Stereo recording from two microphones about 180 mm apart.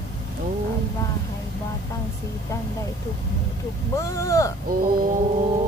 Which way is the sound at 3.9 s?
15° left (ahead or behind).